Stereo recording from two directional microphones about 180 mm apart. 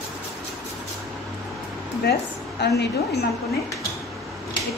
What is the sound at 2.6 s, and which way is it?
Speech, 65° left (ahead or behind).